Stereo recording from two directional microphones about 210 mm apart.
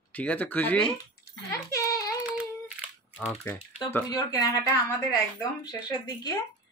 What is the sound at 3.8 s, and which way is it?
Speech, 15° left (ahead or behind).